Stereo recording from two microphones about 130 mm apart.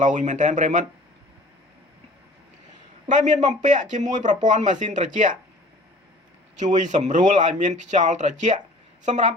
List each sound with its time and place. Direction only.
0.0 s speech: 70° right (ahead or behind)
3.1 s speech: 70° right (ahead or behind)
6.6 s speech: 70° right (ahead or behind)